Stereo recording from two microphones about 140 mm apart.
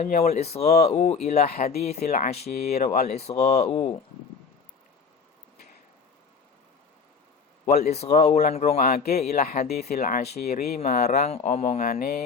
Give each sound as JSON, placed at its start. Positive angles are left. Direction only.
{"t": 0.0, "sound": "speech", "side_deg": 55}
{"t": 7.7, "sound": "speech", "side_deg": 50}
{"t": 9.4, "sound": "speech", "side_deg": 90}
{"t": 9.9, "sound": "speech", "side_deg": 65}
{"t": 10.8, "sound": "speech", "side_deg": 60}
{"t": 11.8, "sound": "speech", "side_deg": 90}